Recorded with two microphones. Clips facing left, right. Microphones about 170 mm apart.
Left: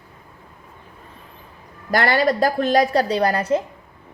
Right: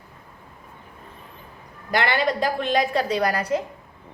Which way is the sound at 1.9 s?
40° left (ahead or behind).